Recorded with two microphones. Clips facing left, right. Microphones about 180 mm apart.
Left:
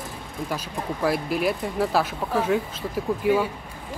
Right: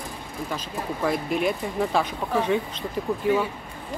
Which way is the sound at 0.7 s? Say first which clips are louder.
Left 1 dB; 5° left (ahead or behind).